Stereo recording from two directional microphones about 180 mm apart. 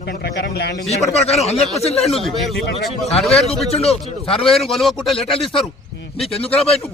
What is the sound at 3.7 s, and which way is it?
Speech, 35° left (ahead or behind).